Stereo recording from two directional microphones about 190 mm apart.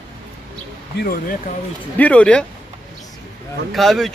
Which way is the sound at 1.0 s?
50° left (ahead or behind).